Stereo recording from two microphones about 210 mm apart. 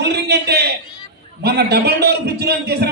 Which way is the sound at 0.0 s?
50° right (ahead or behind).